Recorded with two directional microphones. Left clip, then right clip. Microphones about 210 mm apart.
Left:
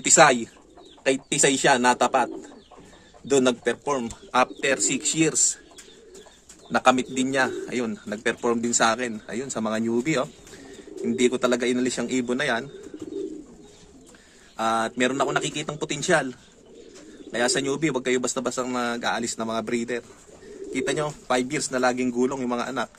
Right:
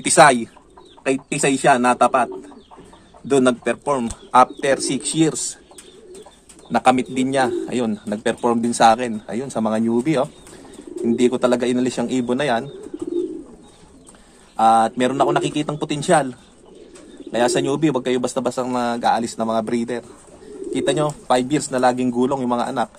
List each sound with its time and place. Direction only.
0.0 s speech: centre (ahead or behind)
6.7 s speech: 10° right (ahead or behind)
14.6 s speech: 10° right (ahead or behind)
17.3 s speech: 15° right (ahead or behind)